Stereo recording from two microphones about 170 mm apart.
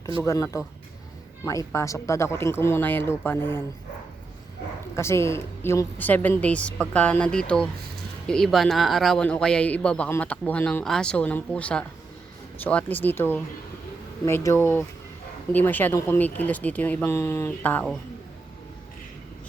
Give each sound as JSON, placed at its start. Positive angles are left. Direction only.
{"t": 0.2, "sound": "a woman's voice", "side_deg": 20}
{"t": 4.9, "sound": "a woman's voice", "side_deg": 15}